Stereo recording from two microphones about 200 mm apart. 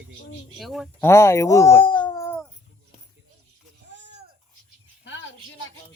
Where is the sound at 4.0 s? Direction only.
60° right (ahead or behind).